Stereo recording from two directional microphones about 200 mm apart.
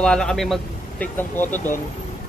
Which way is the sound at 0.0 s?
5° left (ahead or behind).